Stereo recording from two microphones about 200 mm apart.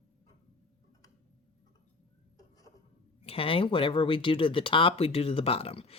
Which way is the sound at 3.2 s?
30° left (ahead or behind).